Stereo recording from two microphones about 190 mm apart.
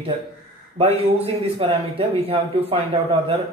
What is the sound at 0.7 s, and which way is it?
Speech, 30° right (ahead or behind).